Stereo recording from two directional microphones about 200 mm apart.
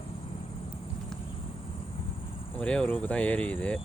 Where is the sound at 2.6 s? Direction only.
5° left (ahead or behind).